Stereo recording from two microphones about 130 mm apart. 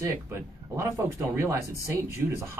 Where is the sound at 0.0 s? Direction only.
20° right (ahead or behind).